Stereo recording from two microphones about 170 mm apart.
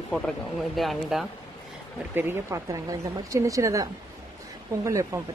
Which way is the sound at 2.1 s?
15° right (ahead or behind).